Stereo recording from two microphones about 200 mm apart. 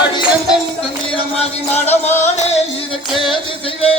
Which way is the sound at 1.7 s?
10° left (ahead or behind).